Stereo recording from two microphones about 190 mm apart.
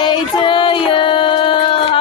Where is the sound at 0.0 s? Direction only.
25° left (ahead or behind).